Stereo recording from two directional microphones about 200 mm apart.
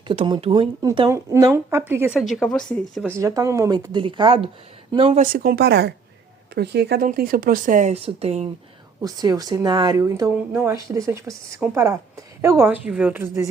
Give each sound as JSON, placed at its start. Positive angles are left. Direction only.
{"t": 0.1, "sound": "a woman's voice", "side_deg": -25}
{"t": 2.1, "sound": "speech", "side_deg": 0}
{"t": 3.1, "sound": "a woman's voice", "side_deg": -15}
{"t": 5.2, "sound": "speech", "side_deg": -50}
{"t": 9.0, "sound": "a woman's voice", "side_deg": -20}